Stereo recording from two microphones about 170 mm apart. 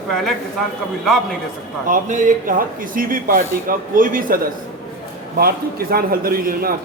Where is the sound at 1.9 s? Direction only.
45° right (ahead or behind).